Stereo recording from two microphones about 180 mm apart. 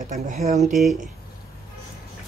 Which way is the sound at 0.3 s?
40° right (ahead or behind).